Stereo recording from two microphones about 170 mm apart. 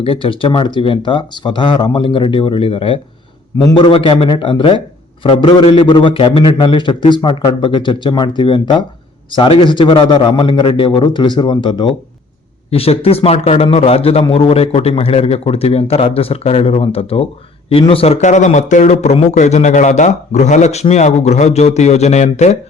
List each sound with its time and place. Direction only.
0.0 s a man's voice: 30° left (ahead or behind)